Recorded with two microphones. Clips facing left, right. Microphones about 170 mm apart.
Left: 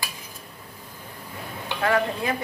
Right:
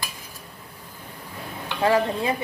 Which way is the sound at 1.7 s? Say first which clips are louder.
Right 3 dB; 25° right (ahead or behind).